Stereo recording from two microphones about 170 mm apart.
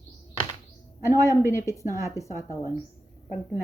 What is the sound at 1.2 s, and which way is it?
Speech, 15° left (ahead or behind).